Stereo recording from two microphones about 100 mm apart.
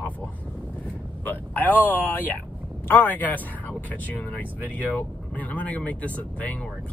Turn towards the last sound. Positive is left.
turn(degrees=15)  # may be behind; listen again after turning